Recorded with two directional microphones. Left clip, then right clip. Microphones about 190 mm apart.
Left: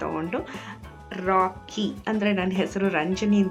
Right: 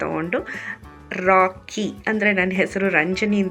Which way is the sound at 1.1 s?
20° right (ahead or behind).